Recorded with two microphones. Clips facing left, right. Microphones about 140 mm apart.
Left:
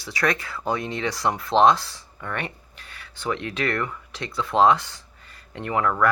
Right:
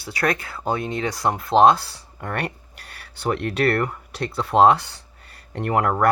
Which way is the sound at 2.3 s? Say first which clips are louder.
Right 3 dB; 45° right (ahead or behind).